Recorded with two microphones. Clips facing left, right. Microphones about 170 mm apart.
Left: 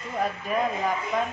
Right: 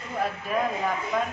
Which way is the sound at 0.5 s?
Centre (ahead or behind).